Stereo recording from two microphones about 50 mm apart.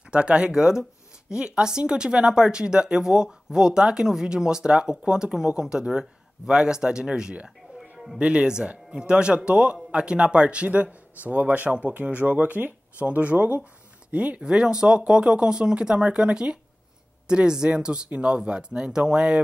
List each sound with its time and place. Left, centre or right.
0.1 s speech: right